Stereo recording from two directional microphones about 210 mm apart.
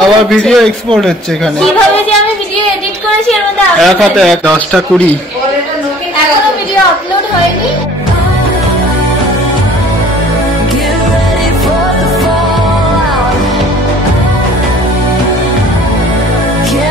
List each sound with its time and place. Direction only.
0.0 s a man's voice: centre (ahead or behind)
3.8 s a man's voice: centre (ahead or behind)